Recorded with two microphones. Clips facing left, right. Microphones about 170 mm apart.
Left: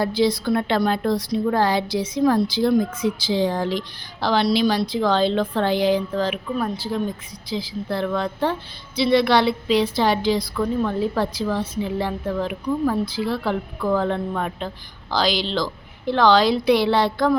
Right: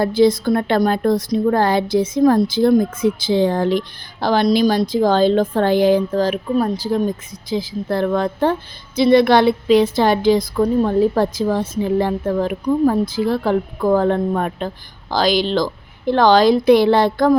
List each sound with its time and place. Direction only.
0.0 s a woman's voice: 50° right (ahead or behind)